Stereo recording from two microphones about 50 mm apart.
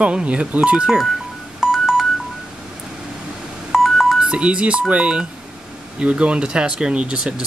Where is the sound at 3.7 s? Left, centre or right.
Centre.